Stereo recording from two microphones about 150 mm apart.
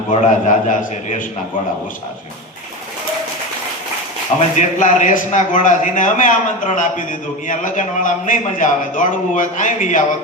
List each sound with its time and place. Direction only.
0.1 s a man's voice: 50° left (ahead or behind)
4.4 s a man's voice: 55° left (ahead or behind)